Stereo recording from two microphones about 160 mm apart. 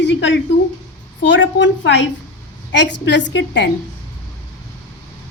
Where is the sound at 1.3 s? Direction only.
90° left.